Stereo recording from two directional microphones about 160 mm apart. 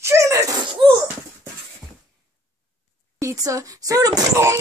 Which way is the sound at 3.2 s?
20° right (ahead or behind).